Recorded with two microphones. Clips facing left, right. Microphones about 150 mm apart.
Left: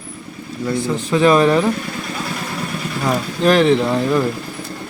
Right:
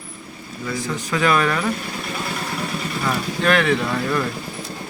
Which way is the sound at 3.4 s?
35° left (ahead or behind).